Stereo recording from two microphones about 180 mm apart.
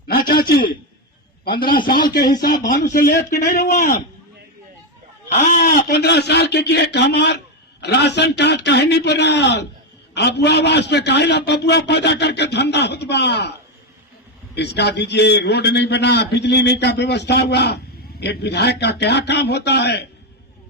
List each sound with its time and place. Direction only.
0.1 s a sound: 55° left (ahead or behind)
2.1 s speech: 55° left (ahead or behind)
5.6 s a man's voice: 65° left (ahead or behind)
14.5 s a man's voice: 70° left (ahead or behind)